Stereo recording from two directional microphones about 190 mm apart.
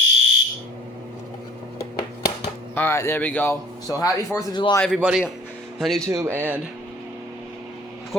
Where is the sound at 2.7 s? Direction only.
10° left (ahead or behind).